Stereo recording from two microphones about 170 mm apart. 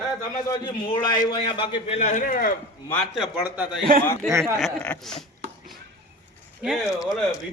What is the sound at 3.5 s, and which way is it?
Speech, 5° right (ahead or behind).